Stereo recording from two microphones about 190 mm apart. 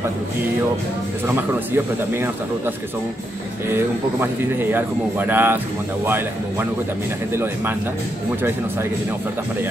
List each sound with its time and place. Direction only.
1.3 s speech: 10° right (ahead or behind)
3.7 s speech: 10° right (ahead or behind)